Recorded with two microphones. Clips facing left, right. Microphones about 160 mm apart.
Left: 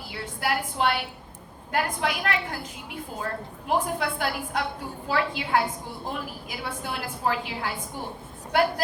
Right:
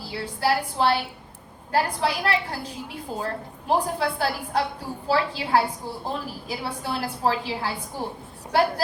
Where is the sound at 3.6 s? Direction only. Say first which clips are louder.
Right 2 dB; 35° right (ahead or behind).